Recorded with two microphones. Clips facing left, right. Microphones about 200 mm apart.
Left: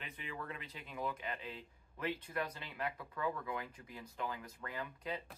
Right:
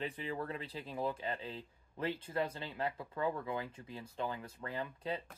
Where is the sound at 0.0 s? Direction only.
35° right (ahead or behind).